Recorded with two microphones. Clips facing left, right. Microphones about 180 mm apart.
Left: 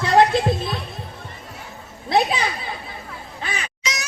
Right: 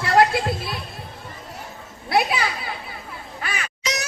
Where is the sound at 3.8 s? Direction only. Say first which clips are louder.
Right 3 dB; 60° right (ahead or behind).